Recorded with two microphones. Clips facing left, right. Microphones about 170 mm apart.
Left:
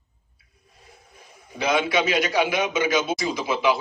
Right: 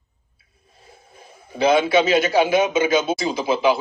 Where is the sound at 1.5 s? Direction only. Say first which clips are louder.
Right 6 dB; 30° right (ahead or behind).